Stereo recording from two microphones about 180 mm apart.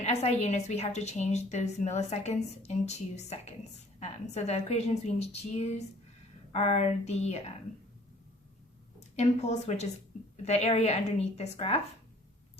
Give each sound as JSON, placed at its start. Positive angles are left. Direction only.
{"t": 0.0, "sound": "a woman's voice", "side_deg": 35}
{"t": 9.0, "sound": "a woman's voice", "side_deg": 40}